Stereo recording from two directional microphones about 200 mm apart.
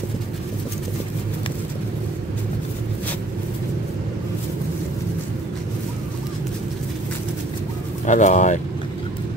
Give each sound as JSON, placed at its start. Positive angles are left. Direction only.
{"t": 8.1, "sound": "speech", "side_deg": 40}